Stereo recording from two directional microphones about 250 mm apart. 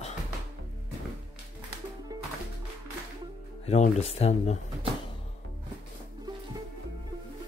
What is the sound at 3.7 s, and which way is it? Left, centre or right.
Speech, left.